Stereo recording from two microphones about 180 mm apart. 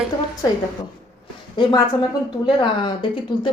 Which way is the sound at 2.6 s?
25° left (ahead or behind).